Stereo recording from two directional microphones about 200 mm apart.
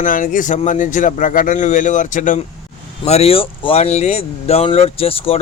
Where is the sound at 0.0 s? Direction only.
40° left (ahead or behind).